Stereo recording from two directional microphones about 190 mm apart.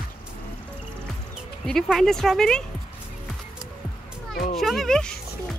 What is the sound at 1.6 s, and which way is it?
Speech, centre (ahead or behind).